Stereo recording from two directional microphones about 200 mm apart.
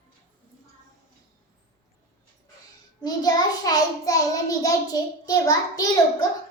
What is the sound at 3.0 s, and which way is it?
A child's voice, 20° left (ahead or behind).